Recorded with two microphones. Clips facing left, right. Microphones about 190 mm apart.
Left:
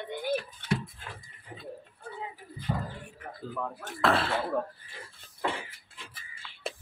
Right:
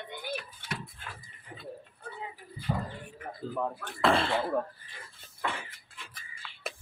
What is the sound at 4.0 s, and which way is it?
Speech, centre (ahead or behind).